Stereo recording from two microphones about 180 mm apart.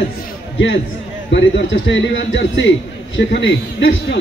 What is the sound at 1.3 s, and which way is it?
A man's voice, 90° left.